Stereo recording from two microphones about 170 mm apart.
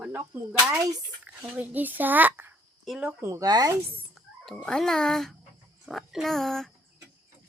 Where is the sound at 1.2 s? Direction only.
10° right (ahead or behind).